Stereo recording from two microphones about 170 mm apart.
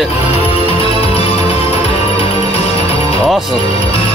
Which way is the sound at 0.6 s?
35° left (ahead or behind).